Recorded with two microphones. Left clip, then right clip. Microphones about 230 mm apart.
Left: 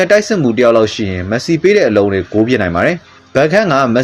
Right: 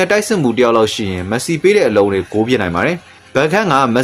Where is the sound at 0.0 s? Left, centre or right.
Centre.